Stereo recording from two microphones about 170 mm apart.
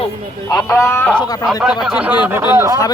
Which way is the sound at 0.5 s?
15° left (ahead or behind).